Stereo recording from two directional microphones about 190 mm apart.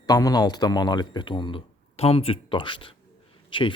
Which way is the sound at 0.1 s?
20° left (ahead or behind).